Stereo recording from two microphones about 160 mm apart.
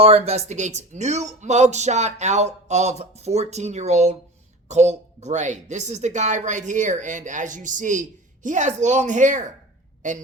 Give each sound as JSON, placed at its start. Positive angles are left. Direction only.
{"t": 0.0, "sound": "speech", "side_deg": -40}